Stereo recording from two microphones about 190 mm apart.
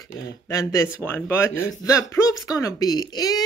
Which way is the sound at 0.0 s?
15° left (ahead or behind).